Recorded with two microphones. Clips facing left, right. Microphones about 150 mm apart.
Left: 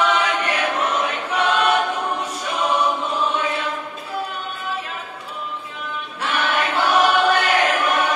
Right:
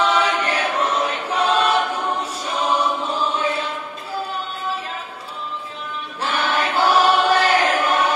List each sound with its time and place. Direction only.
0.0 s choir: 35° right (ahead or behind)
6.2 s choir: 30° right (ahead or behind)